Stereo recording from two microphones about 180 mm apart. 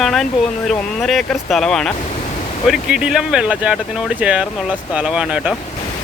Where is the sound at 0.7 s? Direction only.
Centre (ahead or behind).